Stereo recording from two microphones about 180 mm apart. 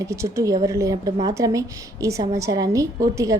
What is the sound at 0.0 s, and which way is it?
A woman's voice, 15° right (ahead or behind).